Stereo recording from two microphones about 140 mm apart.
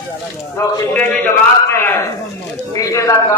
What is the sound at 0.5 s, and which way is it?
A man's voice, 10° left (ahead or behind).